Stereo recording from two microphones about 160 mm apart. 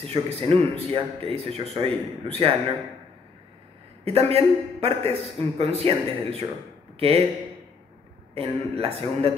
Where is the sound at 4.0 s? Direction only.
40° right (ahead or behind).